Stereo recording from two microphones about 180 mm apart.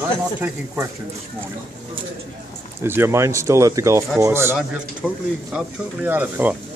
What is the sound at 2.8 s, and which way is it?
Speech, 15° right (ahead or behind).